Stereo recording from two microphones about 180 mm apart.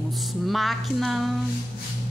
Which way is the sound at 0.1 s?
Centre (ahead or behind).